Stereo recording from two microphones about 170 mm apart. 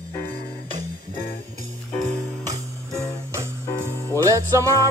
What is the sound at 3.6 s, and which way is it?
Music, 15° left (ahead or behind).